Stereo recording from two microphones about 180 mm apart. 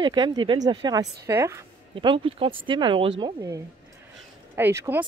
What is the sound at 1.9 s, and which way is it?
Speech, 30° right (ahead or behind).